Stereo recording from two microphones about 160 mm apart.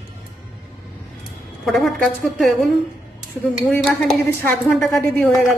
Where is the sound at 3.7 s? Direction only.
10° left (ahead or behind).